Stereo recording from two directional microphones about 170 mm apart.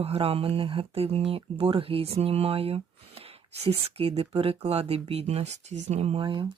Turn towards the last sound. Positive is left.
turn(degrees=-30)  # may be behind; listen again after turning